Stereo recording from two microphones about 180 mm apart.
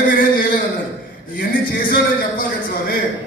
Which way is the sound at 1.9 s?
50° left (ahead or behind).